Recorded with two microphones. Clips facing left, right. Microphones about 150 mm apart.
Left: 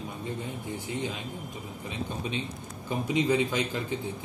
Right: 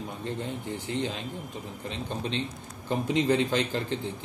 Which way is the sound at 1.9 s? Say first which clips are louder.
Right 1 dB; 10° left (ahead or behind).